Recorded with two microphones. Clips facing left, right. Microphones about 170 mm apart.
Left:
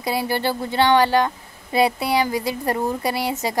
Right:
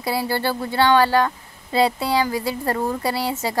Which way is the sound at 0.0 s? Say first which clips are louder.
Even; 20° left (ahead or behind).